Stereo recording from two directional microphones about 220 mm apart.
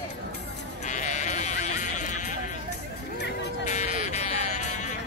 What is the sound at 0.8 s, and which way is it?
Sheep, 35° left (ahead or behind).